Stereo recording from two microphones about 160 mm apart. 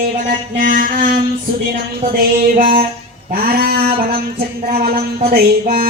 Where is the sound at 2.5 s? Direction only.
60° right (ahead or behind).